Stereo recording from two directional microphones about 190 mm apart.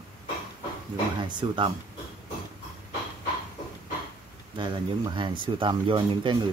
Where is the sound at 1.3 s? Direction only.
25° right (ahead or behind).